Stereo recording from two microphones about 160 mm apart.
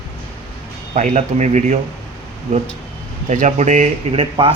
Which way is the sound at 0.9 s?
45° right (ahead or behind).